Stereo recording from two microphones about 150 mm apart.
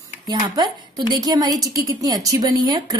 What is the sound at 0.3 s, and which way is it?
A woman's voice, 25° right (ahead or behind).